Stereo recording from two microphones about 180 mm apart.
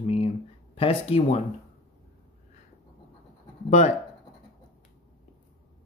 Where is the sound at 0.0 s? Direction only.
35° left (ahead or behind).